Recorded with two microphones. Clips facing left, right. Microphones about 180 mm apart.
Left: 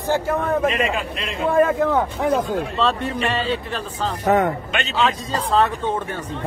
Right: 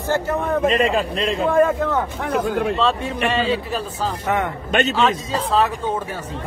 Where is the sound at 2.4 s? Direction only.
70° right (ahead or behind).